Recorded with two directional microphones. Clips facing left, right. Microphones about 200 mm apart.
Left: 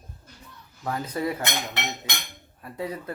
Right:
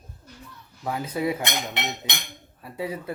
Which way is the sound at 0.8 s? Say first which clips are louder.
Right 2 dB; 10° right (ahead or behind).